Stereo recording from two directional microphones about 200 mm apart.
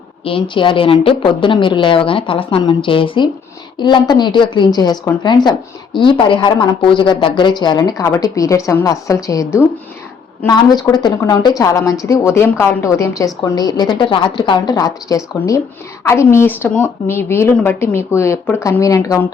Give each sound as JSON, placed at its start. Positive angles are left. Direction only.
{"t": 0.3, "sound": "a woman's voice", "side_deg": 25}